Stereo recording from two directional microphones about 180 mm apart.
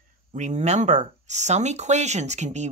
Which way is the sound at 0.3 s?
40° right (ahead or behind).